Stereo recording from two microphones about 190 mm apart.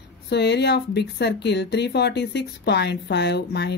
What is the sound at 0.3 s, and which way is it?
Speech, 65° left (ahead or behind).